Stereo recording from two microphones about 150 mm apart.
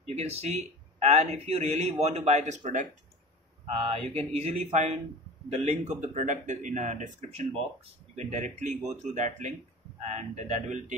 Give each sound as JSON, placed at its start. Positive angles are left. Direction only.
{"t": 0.0, "sound": "speech", "side_deg": -45}
{"t": 3.7, "sound": "speech", "side_deg": -40}